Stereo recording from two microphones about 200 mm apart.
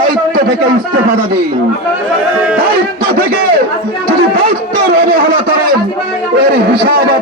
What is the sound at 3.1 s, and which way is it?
Speech, 50° right (ahead or behind).